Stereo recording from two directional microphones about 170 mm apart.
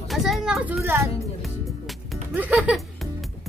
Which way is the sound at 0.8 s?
15° right (ahead or behind).